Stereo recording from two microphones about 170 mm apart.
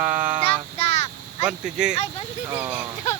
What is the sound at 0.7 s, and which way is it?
Child singing, 40° left (ahead or behind).